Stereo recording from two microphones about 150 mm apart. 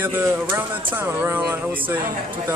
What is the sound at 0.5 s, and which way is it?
Speech, 15° right (ahead or behind).